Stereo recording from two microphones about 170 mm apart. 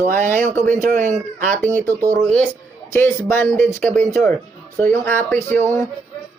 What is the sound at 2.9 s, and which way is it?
Speech, 15° left (ahead or behind).